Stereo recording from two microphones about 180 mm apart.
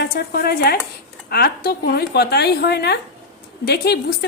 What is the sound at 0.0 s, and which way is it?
Speech, 60° left (ahead or behind).